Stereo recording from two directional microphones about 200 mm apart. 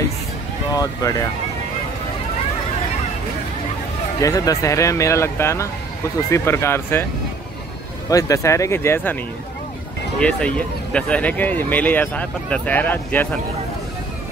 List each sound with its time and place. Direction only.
0.7 s speech: 15° left (ahead or behind)
4.2 s speech: 15° left (ahead or behind)
8.1 s speech: 15° left (ahead or behind)
10.2 s speech: 5° left (ahead or behind)